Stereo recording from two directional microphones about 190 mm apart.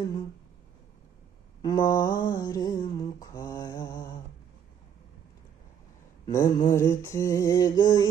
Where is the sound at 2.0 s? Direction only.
20° left (ahead or behind).